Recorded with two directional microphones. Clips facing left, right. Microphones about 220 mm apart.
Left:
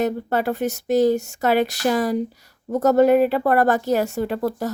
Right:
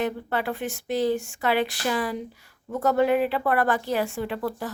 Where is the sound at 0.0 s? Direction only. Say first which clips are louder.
Left 5 dB; 40° left (ahead or behind).